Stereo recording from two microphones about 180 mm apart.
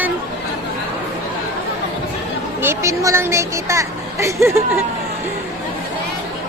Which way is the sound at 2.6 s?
15° right (ahead or behind).